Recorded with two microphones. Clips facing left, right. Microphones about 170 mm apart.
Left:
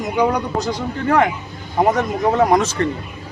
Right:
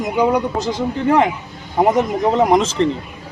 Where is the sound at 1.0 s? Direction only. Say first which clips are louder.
Right 1 dB; 20° right (ahead or behind).